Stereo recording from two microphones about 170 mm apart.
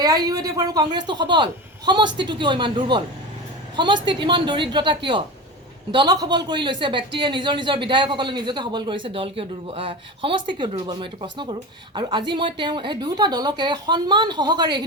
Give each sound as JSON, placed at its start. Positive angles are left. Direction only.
{"t": 0.0, "sound": "speech", "side_deg": -20}